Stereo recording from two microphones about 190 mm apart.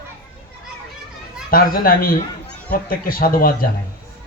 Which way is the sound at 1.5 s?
50° left (ahead or behind).